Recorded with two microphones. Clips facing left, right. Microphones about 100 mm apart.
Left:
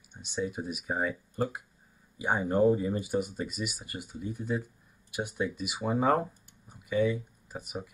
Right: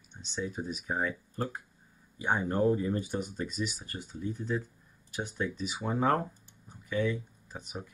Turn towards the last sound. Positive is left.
turn(degrees=5)  # may be behind; listen again after turning